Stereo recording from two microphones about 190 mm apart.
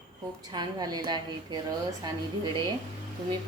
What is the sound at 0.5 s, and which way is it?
A woman's voice, 20° right (ahead or behind).